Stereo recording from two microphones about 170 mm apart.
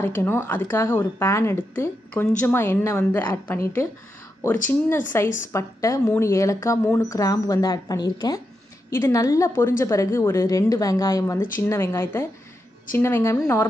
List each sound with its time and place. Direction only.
0.0 s a woman's voice: 10° left (ahead or behind)